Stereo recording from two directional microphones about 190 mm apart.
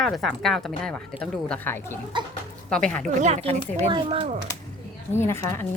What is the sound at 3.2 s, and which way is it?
Speech, 35° right (ahead or behind).